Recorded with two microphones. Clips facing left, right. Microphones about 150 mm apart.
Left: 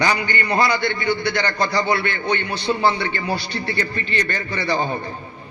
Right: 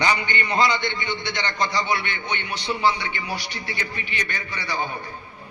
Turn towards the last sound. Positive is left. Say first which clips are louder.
# left 6 dB
turn(degrees=-10)  # may be behind; listen again after turning